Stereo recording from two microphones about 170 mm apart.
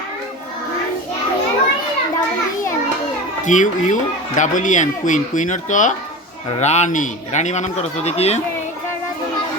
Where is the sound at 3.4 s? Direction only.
45° left (ahead or behind).